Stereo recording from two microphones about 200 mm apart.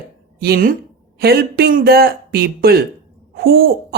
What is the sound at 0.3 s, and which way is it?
A woman's voice, 50° right (ahead or behind).